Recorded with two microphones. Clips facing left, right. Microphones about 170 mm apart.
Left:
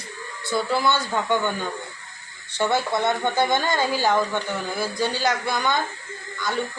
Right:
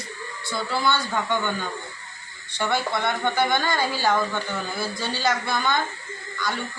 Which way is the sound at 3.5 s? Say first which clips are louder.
Left 2 dB; 20° left (ahead or behind).